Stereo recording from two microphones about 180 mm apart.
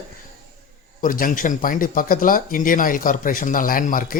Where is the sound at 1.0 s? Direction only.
50° left (ahead or behind).